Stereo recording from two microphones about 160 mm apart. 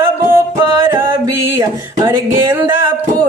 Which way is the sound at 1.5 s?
20° right (ahead or behind).